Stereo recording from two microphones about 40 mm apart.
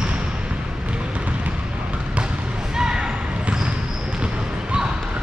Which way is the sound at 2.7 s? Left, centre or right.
Centre.